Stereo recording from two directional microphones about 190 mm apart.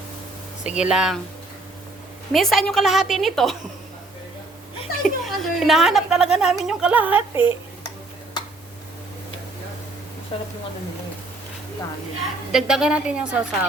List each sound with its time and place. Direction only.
0.6 s a woman's voice: 5° right (ahead or behind)
2.3 s a woman's voice: centre (ahead or behind)
5.0 s a woman's voice: centre (ahead or behind)
10.3 s speech: 30° left (ahead or behind)
12.5 s a woman's voice: 5° right (ahead or behind)